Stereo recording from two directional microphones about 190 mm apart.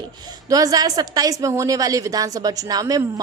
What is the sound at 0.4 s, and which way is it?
A woman's voice, 20° right (ahead or behind).